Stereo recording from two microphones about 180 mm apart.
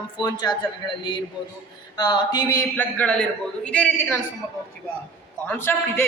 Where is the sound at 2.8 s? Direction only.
10° left (ahead or behind).